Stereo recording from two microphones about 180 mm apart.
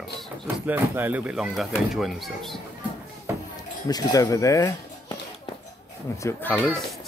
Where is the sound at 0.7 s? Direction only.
10° right (ahead or behind).